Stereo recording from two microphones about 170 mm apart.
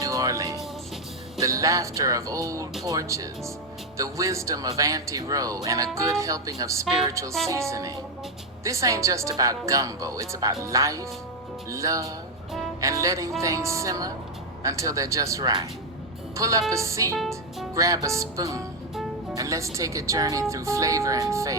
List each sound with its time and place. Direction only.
0.0 s music: 20° right (ahead or behind)
1.4 s a woman's voice: 20° right (ahead or behind)
17.2 s music: centre (ahead or behind)
17.7 s a woman's voice: 20° right (ahead or behind)